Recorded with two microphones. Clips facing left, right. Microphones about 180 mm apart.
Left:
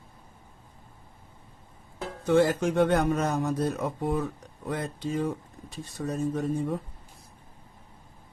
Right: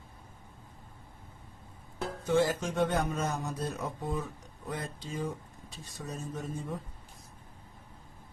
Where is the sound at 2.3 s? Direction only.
60° left (ahead or behind).